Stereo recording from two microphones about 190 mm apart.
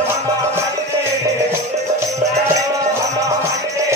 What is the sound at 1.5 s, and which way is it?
Music, 15° right (ahead or behind).